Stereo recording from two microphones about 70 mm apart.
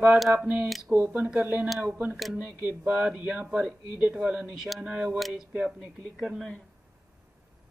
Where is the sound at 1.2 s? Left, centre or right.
Centre.